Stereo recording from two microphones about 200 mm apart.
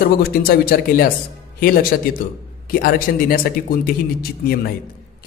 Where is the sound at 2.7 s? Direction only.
45° left (ahead or behind).